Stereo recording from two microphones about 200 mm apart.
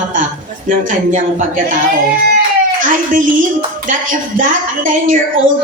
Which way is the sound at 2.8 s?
40° right (ahead or behind).